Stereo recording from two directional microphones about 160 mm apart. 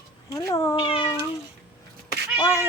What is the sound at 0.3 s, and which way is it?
Speech, 20° left (ahead or behind).